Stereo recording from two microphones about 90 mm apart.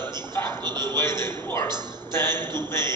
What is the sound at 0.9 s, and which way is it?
A man's voice, 30° left (ahead or behind).